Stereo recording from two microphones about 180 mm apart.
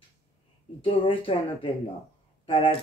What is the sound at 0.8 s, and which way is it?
Speech, 30° left (ahead or behind).